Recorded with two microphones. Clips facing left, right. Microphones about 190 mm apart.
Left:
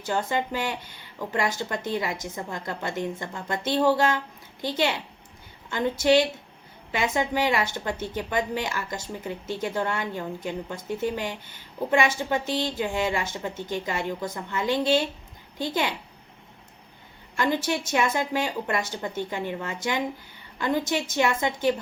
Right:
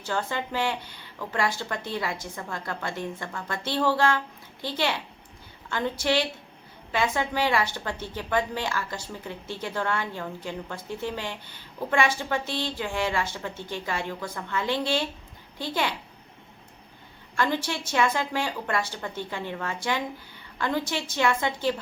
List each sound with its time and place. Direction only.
0.1 s a woman's voice: 15° left (ahead or behind)
17.3 s a woman's voice: 15° left (ahead or behind)